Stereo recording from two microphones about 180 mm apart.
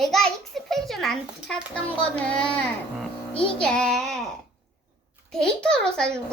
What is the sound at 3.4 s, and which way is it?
Speech, 5° left (ahead or behind).